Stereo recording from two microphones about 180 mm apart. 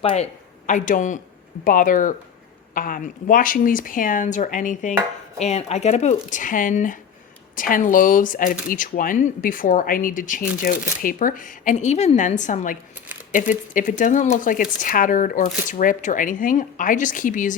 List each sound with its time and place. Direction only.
0.0 s speech: 30° left (ahead or behind)
0.7 s speech: 45° left (ahead or behind)